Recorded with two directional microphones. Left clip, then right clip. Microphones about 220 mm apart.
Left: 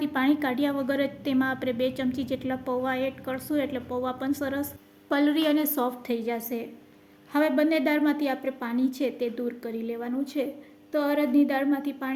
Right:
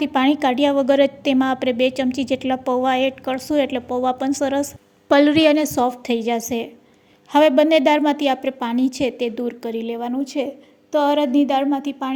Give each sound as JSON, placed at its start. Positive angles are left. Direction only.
{"t": 0.0, "sound": "a woman's voice", "side_deg": -30}